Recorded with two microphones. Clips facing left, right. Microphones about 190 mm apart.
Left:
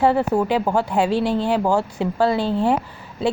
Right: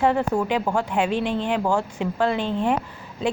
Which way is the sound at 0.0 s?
35° left (ahead or behind).